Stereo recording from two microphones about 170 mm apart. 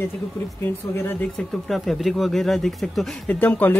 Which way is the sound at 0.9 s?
10° left (ahead or behind).